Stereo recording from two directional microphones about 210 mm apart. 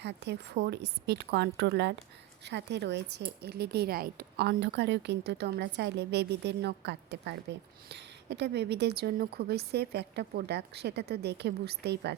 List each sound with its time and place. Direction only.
0.0 s a woman's voice: 55° right (ahead or behind)